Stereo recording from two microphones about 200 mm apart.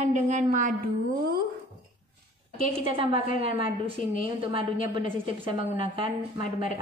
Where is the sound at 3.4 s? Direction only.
30° right (ahead or behind).